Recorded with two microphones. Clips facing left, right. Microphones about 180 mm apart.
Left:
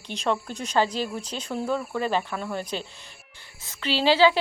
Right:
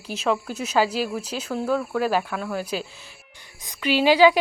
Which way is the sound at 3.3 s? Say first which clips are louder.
Right 2 dB; 15° right (ahead or behind).